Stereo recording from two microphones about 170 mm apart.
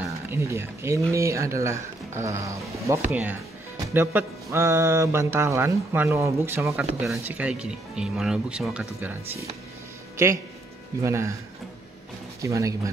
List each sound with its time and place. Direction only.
0.3 s speech: 15° right (ahead or behind)
6.8 s speech: 5° right (ahead or behind)
10.1 s speech: 15° right (ahead or behind)
12.4 s speech: 20° right (ahead or behind)